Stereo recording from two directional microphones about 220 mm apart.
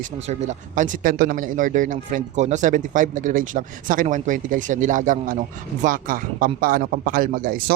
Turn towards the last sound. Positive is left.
turn(degrees=-40)  # may be behind; listen again after turning